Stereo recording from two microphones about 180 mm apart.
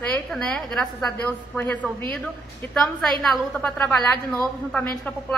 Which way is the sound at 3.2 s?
5° left (ahead or behind).